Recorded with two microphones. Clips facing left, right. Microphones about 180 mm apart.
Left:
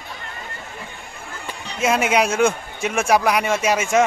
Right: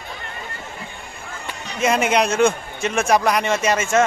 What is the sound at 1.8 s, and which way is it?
Speech, 5° left (ahead or behind).